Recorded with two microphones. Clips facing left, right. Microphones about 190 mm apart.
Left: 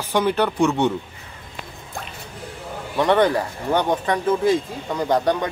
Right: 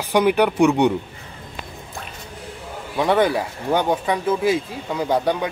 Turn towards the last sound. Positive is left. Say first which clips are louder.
# even
turn(degrees=-10)  # may be behind; listen again after turning